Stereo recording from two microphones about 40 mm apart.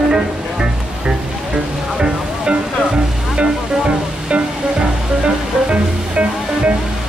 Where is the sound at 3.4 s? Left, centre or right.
Right.